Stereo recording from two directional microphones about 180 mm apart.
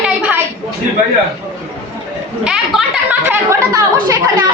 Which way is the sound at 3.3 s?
15° right (ahead or behind).